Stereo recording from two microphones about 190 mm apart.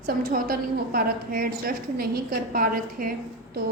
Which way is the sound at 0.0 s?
50° right (ahead or behind).